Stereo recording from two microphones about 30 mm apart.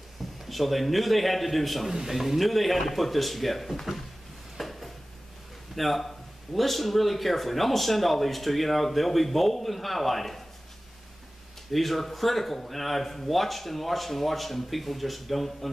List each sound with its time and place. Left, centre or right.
0.5 s a man's voice: centre
1.9 s a man's voice: centre
4.6 s dishes: centre
5.8 s a man's voice: centre
11.7 s a man's voice: centre